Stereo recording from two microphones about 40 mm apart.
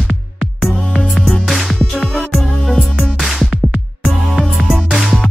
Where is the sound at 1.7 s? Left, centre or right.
Centre.